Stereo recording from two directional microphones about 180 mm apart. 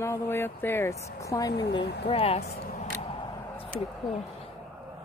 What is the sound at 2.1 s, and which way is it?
Speech, 35° left (ahead or behind).